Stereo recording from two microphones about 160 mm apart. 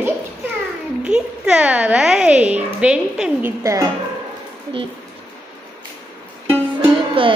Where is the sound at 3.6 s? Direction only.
20° right (ahead or behind).